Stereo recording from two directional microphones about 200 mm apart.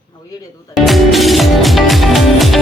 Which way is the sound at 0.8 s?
Centre (ahead or behind).